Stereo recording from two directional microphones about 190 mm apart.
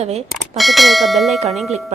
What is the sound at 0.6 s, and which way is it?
Speech, centre (ahead or behind).